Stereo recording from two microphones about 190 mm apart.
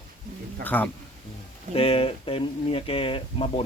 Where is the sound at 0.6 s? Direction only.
10° left (ahead or behind).